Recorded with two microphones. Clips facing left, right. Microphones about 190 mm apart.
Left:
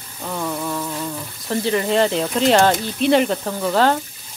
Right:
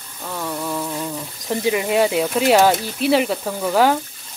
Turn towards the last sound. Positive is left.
turn(degrees=-10)  # may be behind; listen again after turning